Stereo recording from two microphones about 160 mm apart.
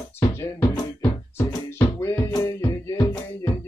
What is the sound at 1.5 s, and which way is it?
Music, 15° left (ahead or behind).